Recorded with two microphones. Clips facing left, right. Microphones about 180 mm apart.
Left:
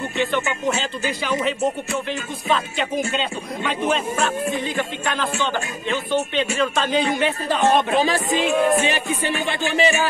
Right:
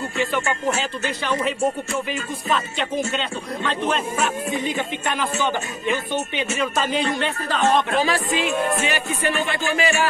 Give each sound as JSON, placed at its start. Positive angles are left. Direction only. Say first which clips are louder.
{"t": 1.0, "sound": "speech", "louder": "left 2 dB", "side_deg": 10}
{"t": 2.4, "sound": "speech", "louder": "left 3 dB", "side_deg": 0}
{"t": 5.1, "sound": "speech", "louder": "even", "side_deg": -10}
{"t": 7.4, "sound": "speech", "louder": "left 1 dB", "side_deg": 15}
{"t": 8.8, "sound": "music", "louder": "left 1 dB", "side_deg": 20}